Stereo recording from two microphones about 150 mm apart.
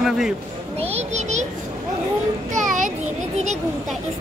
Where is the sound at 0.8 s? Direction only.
45° right (ahead or behind).